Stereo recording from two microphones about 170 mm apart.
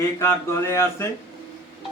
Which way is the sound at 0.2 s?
15° left (ahead or behind).